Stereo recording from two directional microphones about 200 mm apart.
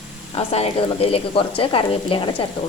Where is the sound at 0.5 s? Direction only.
30° left (ahead or behind).